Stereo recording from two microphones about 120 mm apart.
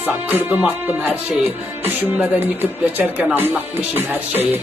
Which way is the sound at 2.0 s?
15° right (ahead or behind).